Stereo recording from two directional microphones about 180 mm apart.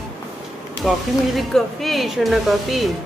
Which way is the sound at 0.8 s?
Centre (ahead or behind).